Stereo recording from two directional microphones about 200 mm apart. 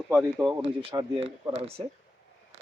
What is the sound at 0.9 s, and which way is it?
Speech, 20° right (ahead or behind).